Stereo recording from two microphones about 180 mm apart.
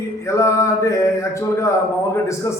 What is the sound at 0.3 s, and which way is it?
A man's voice, 15° left (ahead or behind).